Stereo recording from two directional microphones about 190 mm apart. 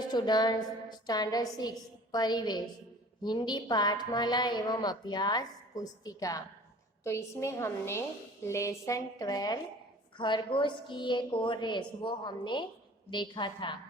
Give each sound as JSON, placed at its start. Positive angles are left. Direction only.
{"t": 0.0, "sound": "a woman's voice", "side_deg": 20}